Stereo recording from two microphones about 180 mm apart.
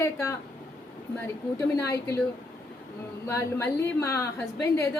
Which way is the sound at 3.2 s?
15° left (ahead or behind).